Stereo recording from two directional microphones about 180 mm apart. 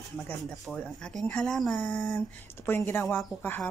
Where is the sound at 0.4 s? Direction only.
Centre (ahead or behind).